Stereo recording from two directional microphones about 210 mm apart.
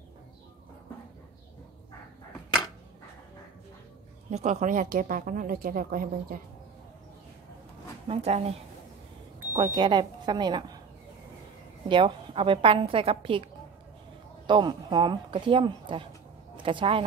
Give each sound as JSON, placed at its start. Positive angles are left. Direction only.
{"t": 4.3, "sound": "a woman's voice", "side_deg": -35}
{"t": 8.1, "sound": "a woman's voice", "side_deg": -30}
{"t": 11.9, "sound": "speech", "side_deg": -25}